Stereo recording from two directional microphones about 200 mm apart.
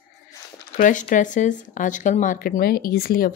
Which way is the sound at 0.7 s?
40° left (ahead or behind).